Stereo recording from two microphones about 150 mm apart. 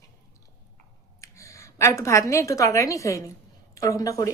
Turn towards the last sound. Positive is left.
turn(degrees=20)  # may be behind; listen again after turning